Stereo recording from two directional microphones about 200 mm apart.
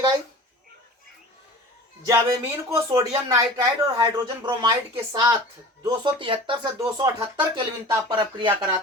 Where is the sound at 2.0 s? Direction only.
15° right (ahead or behind).